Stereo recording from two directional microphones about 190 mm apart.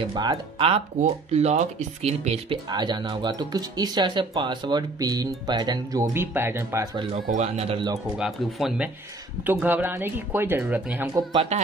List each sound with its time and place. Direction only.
0.0 s speech: 20° right (ahead or behind)
7.2 s a man's voice: 40° right (ahead or behind)
7.7 s speech: 20° right (ahead or behind)
8.2 s speech: centre (ahead or behind)
11.5 s a man's voice: 35° right (ahead or behind)